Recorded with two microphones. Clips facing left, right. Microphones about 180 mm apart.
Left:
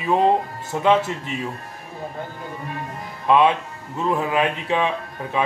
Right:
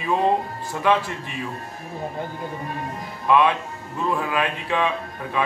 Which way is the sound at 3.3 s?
20° left (ahead or behind).